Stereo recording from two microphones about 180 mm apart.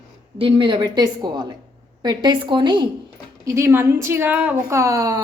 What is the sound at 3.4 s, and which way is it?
A woman's voice, 15° right (ahead or behind).